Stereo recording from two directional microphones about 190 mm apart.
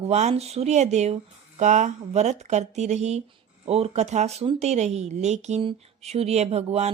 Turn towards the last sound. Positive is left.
turn(degrees=-35)  # may be behind; listen again after turning